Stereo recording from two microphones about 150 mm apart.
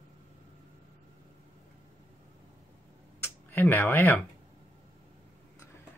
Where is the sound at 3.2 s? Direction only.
15° left (ahead or behind).